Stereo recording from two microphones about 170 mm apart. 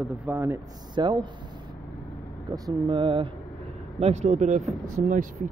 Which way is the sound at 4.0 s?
40° right (ahead or behind).